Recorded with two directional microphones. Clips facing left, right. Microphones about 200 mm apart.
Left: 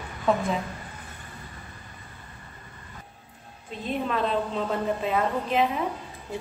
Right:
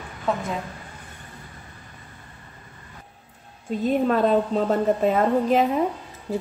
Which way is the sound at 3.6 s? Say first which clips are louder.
Right 8 dB; 45° right (ahead or behind).